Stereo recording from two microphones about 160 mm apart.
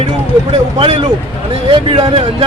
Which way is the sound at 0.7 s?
35° right (ahead or behind).